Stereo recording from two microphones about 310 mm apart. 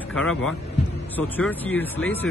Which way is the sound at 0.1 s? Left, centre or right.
Centre.